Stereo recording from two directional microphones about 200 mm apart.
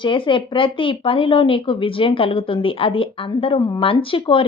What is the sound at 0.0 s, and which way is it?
Speech, 25° left (ahead or behind).